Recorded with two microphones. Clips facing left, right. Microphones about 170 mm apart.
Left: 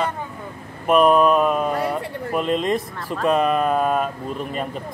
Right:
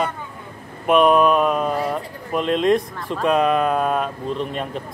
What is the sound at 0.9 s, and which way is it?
Speech, centre (ahead or behind).